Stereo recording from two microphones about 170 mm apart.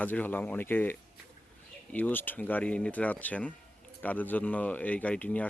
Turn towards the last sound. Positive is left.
turn(degrees=10)  # may be behind; listen again after turning